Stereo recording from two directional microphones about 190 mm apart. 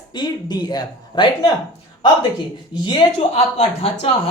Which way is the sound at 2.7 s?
25° left (ahead or behind).